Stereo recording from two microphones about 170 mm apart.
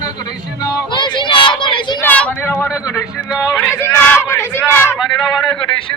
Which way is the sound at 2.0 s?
10° left (ahead or behind).